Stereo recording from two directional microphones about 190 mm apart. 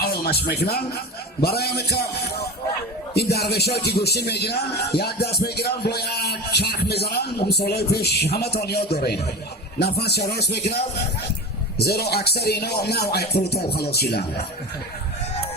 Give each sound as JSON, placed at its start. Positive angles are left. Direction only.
{"t": 0.0, "sound": "speech", "side_deg": 55}
{"t": 1.4, "sound": "music", "side_deg": 55}
{"t": 11.8, "sound": "music", "side_deg": 55}